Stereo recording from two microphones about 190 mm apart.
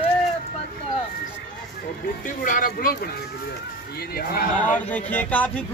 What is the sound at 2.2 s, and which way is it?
Speech, 45° left (ahead or behind).